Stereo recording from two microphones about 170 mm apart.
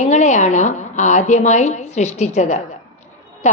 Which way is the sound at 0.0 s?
45° left (ahead or behind).